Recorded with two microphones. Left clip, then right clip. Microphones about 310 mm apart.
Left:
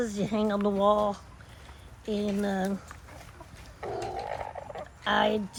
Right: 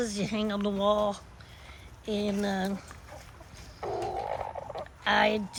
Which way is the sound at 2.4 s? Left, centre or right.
Centre.